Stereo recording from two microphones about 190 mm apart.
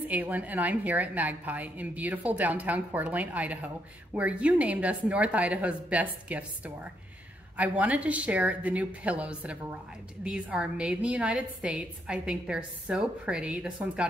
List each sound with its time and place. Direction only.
0.1 s a woman's voice: 10° right (ahead or behind)